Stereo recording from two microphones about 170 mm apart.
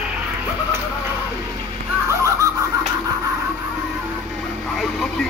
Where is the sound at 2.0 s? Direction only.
20° right (ahead or behind).